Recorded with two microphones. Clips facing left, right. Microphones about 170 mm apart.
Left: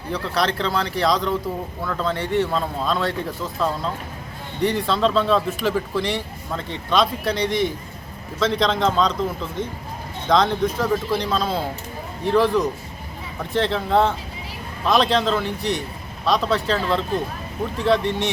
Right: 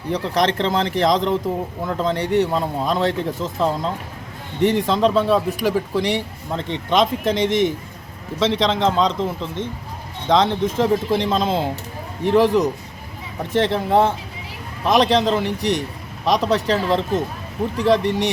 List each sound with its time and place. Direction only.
0.1 s a man's voice: 20° right (ahead or behind)